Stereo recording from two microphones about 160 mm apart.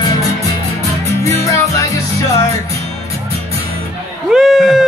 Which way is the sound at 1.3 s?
20° left (ahead or behind).